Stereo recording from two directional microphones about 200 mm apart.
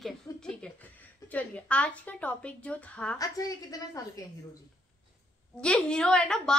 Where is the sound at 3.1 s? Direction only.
20° left (ahead or behind).